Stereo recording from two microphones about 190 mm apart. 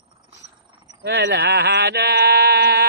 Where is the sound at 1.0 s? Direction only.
60° right (ahead or behind).